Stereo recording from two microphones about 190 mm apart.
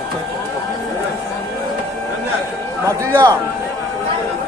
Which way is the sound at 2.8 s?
20° right (ahead or behind).